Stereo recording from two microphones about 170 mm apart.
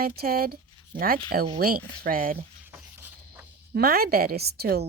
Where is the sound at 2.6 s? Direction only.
10° right (ahead or behind).